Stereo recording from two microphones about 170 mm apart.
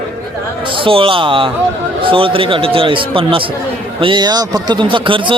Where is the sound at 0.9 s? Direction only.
30° right (ahead or behind).